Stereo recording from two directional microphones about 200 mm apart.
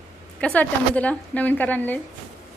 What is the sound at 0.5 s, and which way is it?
A woman's voice, 5° left (ahead or behind).